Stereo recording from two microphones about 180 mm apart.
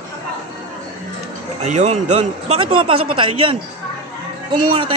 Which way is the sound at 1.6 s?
40° right (ahead or behind).